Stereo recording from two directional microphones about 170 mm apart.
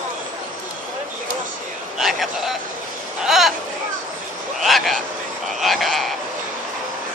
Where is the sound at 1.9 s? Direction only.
Centre (ahead or behind).